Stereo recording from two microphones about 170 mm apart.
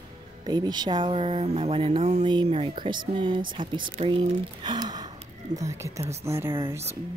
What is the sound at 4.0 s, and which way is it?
Speech, 30° right (ahead or behind).